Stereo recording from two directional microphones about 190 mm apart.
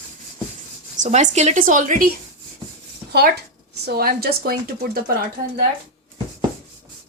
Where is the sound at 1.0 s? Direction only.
40° right (ahead or behind).